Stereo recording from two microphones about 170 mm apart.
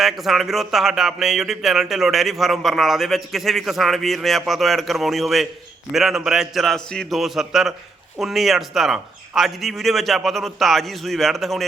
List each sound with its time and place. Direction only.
0.0 s speech: centre (ahead or behind)